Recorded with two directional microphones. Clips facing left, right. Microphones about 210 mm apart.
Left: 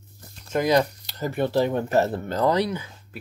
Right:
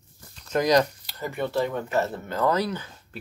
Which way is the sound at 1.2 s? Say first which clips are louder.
Left 4 dB; 35° left (ahead or behind).